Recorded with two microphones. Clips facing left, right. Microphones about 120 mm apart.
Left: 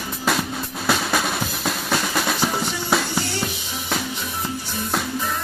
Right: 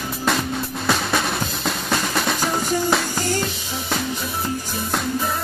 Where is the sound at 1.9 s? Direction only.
Centre (ahead or behind).